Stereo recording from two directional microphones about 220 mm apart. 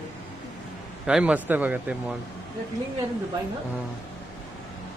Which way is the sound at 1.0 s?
5° right (ahead or behind).